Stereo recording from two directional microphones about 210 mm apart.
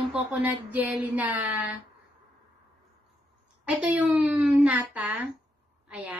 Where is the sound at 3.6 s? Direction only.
5° right (ahead or behind).